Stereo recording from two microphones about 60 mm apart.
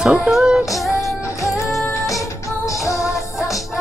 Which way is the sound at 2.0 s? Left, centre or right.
Left.